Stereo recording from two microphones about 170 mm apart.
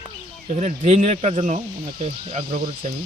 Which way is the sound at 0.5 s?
45° right (ahead or behind).